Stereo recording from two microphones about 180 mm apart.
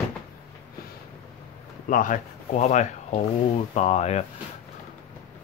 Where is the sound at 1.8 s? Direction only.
45° left (ahead or behind).